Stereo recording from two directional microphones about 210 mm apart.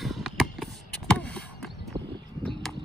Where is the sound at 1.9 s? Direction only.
20° right (ahead or behind).